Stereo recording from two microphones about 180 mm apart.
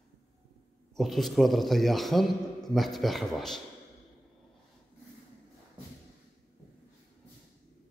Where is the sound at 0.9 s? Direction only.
Centre (ahead or behind).